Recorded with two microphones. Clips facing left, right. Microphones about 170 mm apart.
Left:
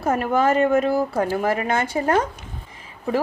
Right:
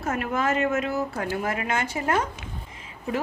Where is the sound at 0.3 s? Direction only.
30° left (ahead or behind).